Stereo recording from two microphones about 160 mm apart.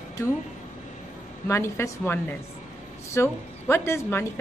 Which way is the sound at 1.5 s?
15° left (ahead or behind).